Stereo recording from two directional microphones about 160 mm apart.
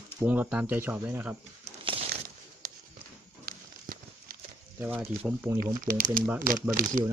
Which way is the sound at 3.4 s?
65° right (ahead or behind).